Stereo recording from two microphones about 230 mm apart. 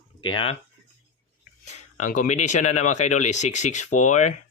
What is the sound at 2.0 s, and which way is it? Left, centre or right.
Speech, left.